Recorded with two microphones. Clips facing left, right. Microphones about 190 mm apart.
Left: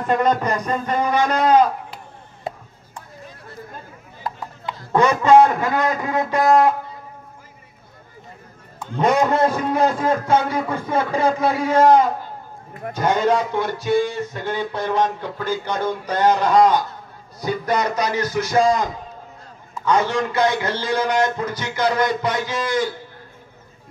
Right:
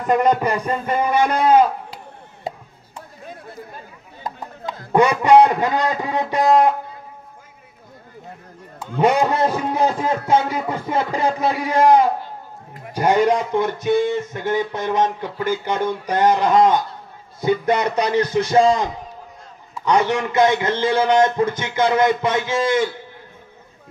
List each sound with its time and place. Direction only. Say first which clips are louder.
0.0 s speech: right 2 dB; 15° right (ahead or behind)
0.8 s music: right 2 dB; 10° right (ahead or behind)
5.2 s a man's voice: left 1 dB; 15° right (ahead or behind)
9.0 s a man's voice: even; 15° right (ahead or behind)